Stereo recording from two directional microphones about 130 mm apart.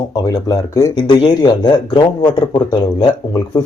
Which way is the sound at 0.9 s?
40° left (ahead or behind).